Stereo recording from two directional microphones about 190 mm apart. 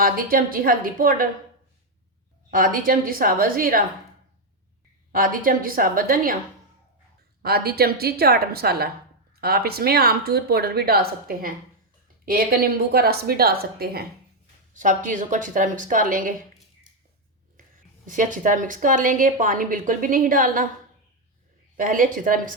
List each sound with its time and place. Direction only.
0.0 s a woman's voice: 50° right (ahead or behind)
2.5 s a woman's voice: 45° right (ahead or behind)
5.1 s a woman's voice: 45° right (ahead or behind)
7.4 s a woman's voice: 55° right (ahead or behind)
14.7 s a woman's voice: 40° right (ahead or behind)
18.0 s a woman's voice: 45° right (ahead or behind)
21.8 s a woman's voice: 45° right (ahead or behind)